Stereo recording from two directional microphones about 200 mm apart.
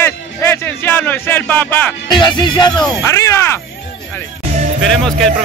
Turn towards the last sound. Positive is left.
turn(degrees=0)  # may be behind; listen again after turning